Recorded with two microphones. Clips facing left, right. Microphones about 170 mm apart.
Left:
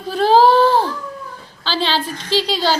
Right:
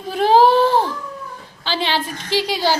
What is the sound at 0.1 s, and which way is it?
Baby cry, 20° right (ahead or behind).